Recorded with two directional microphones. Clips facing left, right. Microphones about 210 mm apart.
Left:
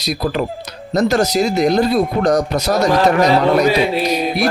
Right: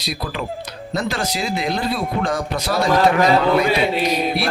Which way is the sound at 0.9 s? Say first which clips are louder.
Left 9 dB; 45° left (ahead or behind).